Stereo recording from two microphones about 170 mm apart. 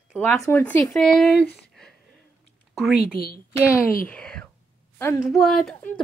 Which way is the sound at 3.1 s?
60° left (ahead or behind).